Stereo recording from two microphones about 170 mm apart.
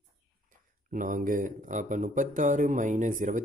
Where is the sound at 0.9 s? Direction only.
55° right (ahead or behind).